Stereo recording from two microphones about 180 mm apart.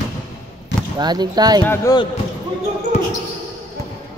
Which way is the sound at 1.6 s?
15° left (ahead or behind).